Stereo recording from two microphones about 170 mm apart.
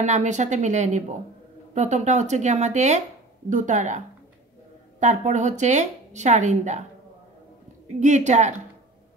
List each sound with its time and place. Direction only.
0.0 s speech: 45° right (ahead or behind)
5.0 s speech: 45° right (ahead or behind)
8.0 s speech: 45° right (ahead or behind)